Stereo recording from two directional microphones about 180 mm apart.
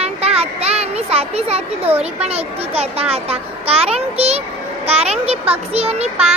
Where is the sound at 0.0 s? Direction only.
35° right (ahead or behind).